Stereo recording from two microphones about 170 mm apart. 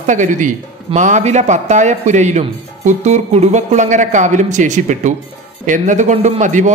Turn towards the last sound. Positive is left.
turn(degrees=-45)  # may be behind; listen again after turning